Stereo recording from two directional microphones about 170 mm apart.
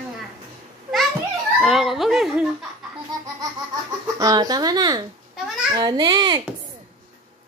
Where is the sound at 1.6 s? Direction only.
Centre (ahead or behind).